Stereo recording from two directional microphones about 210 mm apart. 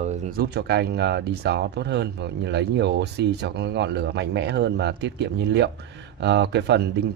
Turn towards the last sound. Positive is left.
turn(degrees=-55)  # may be behind; listen again after turning